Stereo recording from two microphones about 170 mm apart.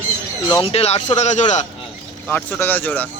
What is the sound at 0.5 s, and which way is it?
Speech, 35° left (ahead or behind).